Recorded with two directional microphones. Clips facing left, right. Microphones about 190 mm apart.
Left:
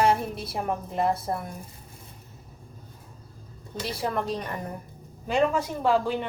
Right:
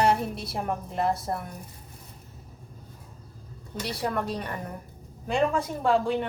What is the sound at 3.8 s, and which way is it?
Speech, centre (ahead or behind).